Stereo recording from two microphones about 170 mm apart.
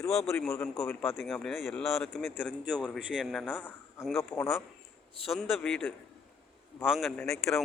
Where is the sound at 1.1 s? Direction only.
Centre (ahead or behind).